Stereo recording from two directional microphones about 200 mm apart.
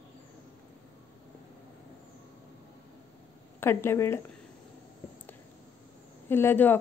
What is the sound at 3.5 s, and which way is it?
Speech, 10° left (ahead or behind).